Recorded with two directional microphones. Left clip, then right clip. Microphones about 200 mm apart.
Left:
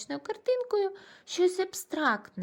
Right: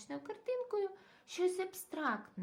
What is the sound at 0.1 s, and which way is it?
Speech, 40° left (ahead or behind).